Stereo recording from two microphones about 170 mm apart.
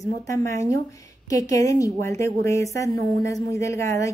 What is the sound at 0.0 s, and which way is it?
A woman's voice, 20° left (ahead or behind).